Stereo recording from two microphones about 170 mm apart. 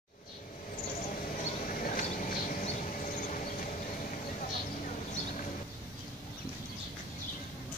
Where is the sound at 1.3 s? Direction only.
50° left (ahead or behind).